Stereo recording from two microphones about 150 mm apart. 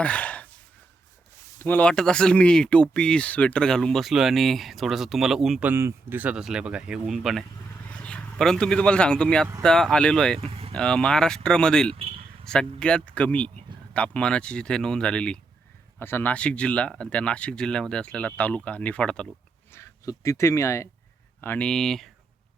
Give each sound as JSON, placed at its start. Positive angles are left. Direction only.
{"t": 0.0, "sound": "sigh", "side_deg": 10}
{"t": 1.5, "sound": "speech", "side_deg": 10}
{"t": 10.4, "sound": "speech", "side_deg": -40}
{"t": 10.8, "sound": "speech", "side_deg": 5}
{"t": 19.7, "sound": "speech", "side_deg": 20}